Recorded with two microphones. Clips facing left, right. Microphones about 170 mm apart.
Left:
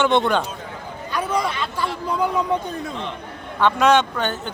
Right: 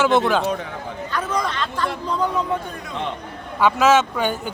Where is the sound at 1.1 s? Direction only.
10° left (ahead or behind).